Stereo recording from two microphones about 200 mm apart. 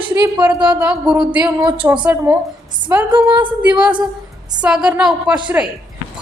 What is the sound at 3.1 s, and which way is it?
Speech, 25° right (ahead or behind).